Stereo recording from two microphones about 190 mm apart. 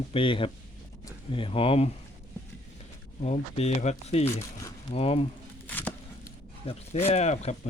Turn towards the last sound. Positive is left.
turn(degrees=35)  # may be behind; listen again after turning